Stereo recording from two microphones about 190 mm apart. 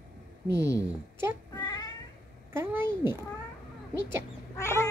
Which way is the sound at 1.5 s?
20° left (ahead or behind).